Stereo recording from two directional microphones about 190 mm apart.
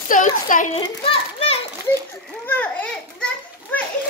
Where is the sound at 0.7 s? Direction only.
25° left (ahead or behind).